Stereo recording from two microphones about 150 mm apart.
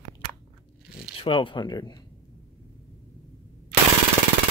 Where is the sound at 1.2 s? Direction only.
35° left (ahead or behind).